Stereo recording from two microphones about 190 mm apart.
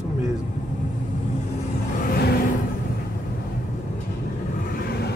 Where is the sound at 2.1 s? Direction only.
55° left (ahead or behind).